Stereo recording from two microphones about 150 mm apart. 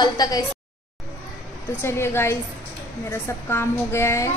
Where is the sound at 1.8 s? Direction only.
15° left (ahead or behind).